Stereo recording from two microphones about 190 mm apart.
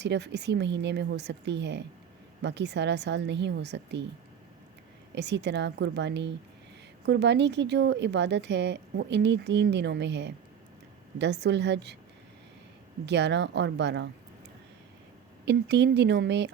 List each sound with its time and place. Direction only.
0.0 s speech: 65° right (ahead or behind)
5.1 s speech: 65° right (ahead or behind)
13.1 s speech: 65° right (ahead or behind)
15.4 s speech: 65° right (ahead or behind)